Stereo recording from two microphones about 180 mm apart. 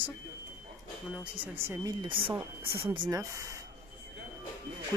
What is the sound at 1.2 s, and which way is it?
Speech, 10° right (ahead or behind).